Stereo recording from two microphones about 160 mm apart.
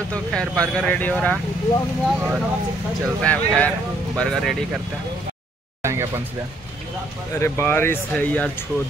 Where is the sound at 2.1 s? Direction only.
10° right (ahead or behind).